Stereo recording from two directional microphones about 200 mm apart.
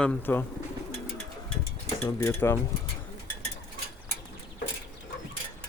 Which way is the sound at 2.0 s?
10° left (ahead or behind).